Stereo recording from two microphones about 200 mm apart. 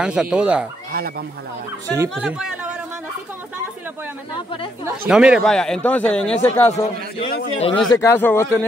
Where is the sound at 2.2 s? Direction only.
5° right (ahead or behind).